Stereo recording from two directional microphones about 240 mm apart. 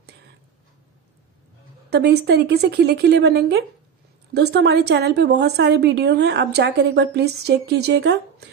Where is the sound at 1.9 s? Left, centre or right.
Right.